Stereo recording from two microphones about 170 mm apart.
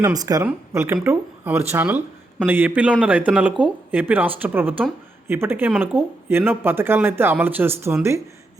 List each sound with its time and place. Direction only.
0.0 s speech: 20° right (ahead or behind)